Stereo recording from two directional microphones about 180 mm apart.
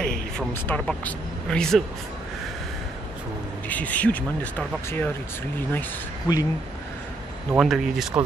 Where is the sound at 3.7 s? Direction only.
10° left (ahead or behind).